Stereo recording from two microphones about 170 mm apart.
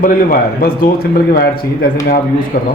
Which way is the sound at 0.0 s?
55° left (ahead or behind).